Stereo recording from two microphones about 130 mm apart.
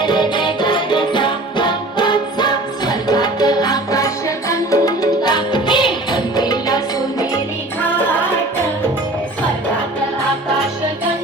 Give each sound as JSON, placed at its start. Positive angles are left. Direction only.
{"t": 0.0, "sound": "music", "side_deg": 35}